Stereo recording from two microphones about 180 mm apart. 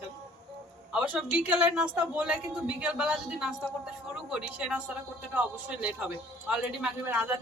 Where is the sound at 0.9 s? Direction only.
5° right (ahead or behind).